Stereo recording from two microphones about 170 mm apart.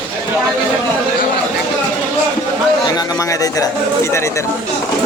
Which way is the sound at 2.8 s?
20° left (ahead or behind).